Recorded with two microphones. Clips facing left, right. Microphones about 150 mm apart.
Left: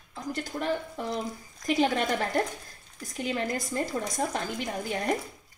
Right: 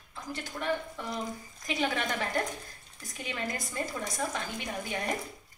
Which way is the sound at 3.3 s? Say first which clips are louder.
Left 6 dB; 35° left (ahead or behind).